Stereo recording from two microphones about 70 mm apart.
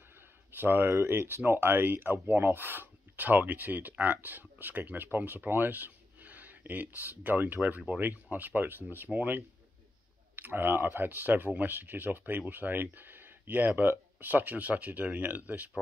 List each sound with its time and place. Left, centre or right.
0.6 s speech: right